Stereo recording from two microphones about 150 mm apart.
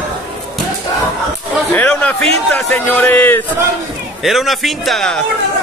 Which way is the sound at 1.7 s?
10° left (ahead or behind).